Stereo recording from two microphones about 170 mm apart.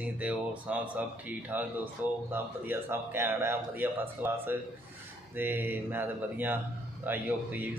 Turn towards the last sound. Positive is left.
turn(degrees=-10)  # may be behind; listen again after turning